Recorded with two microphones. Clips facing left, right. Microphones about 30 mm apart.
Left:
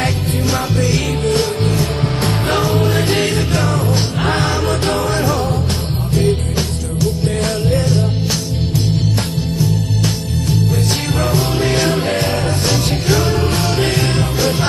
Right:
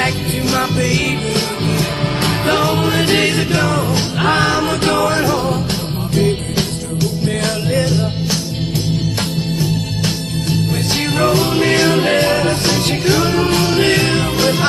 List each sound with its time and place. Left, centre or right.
0.0 s music: right
7.2 s music: right
10.9 s music: right